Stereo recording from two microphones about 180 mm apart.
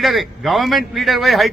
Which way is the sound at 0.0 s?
Centre (ahead or behind).